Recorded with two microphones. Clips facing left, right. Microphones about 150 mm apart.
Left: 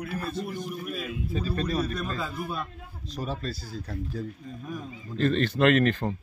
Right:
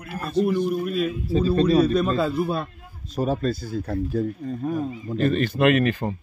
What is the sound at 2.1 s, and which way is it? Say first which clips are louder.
Speech: right 10 dB; 90° right.